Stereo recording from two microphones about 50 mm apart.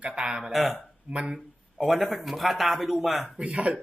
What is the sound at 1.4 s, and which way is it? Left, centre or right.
Speech, centre.